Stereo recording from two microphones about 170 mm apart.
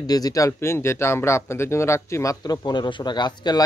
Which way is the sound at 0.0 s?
20° left (ahead or behind).